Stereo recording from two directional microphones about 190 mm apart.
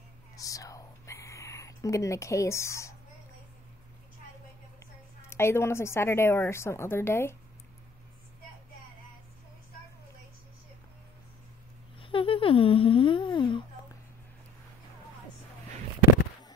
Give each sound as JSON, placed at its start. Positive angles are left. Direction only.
{"t": 0.4, "sound": "whispering", "side_deg": 20}
{"t": 5.3, "sound": "a woman's voice", "side_deg": 15}
{"t": 12.0, "sound": "a sound", "side_deg": 30}